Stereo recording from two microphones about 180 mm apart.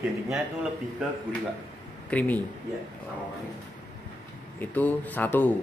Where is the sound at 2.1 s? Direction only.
10° left (ahead or behind).